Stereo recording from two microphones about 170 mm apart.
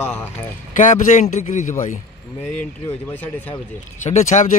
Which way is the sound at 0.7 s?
50° left (ahead or behind).